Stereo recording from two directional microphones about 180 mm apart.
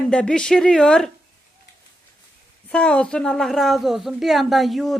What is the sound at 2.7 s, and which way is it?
A woman's voice, 5° left (ahead or behind).